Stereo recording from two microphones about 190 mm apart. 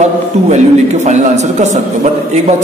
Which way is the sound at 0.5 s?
35° right (ahead or behind).